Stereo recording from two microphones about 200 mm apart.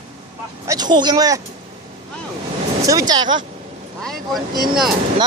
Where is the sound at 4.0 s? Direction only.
Centre (ahead or behind).